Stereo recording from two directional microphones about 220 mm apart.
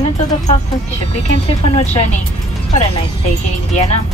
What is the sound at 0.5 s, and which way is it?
A woman's voice, 30° left (ahead or behind).